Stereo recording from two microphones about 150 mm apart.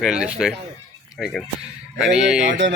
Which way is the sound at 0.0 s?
5° right (ahead or behind).